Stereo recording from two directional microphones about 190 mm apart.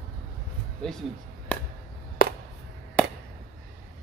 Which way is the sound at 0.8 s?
5° left (ahead or behind).